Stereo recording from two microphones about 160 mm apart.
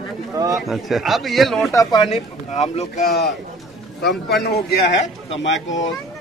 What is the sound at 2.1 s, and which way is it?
Speech, 40° left (ahead or behind).